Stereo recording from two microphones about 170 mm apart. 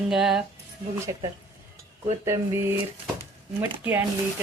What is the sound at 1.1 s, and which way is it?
Speech, 20° right (ahead or behind).